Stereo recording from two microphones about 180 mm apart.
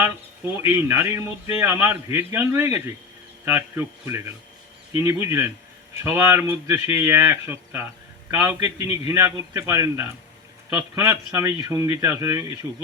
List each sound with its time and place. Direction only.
0.6 s a man's voice: 15° right (ahead or behind)